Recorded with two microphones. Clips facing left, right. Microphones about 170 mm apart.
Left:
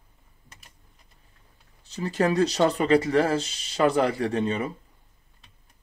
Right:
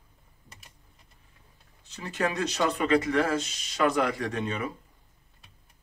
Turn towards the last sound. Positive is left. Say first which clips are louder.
# left 5 dB
turn(degrees=30)  # may be behind; listen again after turning